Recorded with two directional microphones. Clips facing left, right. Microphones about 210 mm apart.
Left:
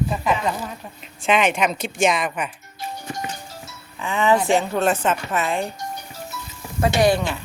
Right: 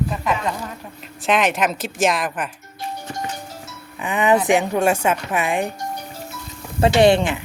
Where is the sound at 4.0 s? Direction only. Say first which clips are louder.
Right 1 dB; 15° right (ahead or behind).